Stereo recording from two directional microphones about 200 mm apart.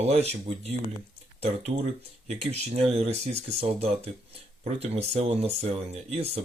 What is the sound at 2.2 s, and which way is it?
Speech, 30° right (ahead or behind).